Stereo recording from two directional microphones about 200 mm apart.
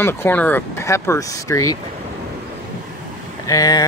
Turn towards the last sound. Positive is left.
turn(degrees=20)  # may be behind; listen again after turning